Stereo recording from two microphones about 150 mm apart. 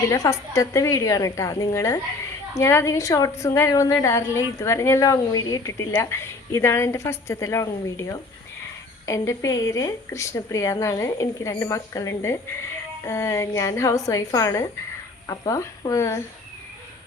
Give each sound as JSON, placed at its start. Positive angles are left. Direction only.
{"t": 0.1, "sound": "a woman's voice", "side_deg": 20}